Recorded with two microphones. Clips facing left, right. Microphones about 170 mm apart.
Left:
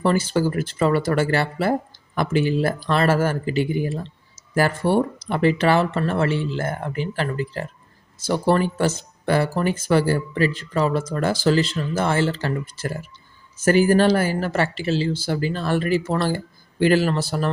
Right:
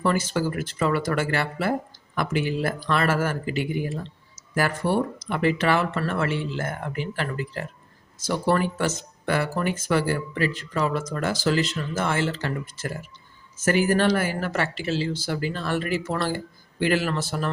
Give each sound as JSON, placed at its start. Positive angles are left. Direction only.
{"t": 0.0, "sound": "speech", "side_deg": 30}